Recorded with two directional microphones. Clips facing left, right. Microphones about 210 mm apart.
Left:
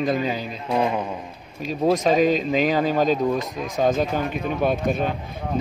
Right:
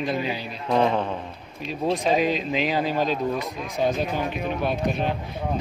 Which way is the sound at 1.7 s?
45° left (ahead or behind).